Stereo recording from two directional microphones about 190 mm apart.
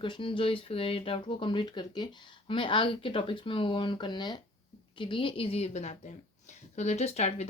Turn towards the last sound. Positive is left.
turn(degrees=35)  # may be behind; listen again after turning